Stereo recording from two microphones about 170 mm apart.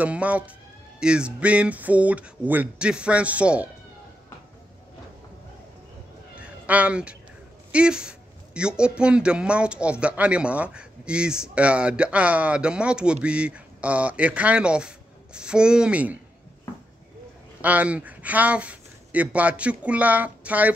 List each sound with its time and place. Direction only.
0.0 s a man's voice: 10° right (ahead or behind)
6.3 s a sound: 10° right (ahead or behind)
7.7 s a man's voice: 5° right (ahead or behind)
17.6 s speech: 10° right (ahead or behind)